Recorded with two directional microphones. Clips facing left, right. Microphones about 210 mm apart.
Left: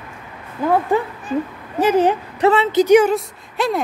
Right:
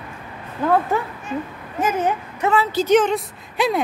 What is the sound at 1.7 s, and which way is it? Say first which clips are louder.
Speech: left 6 dB; 35° left (ahead or behind).